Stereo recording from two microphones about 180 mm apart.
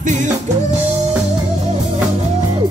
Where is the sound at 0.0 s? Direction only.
45° right (ahead or behind).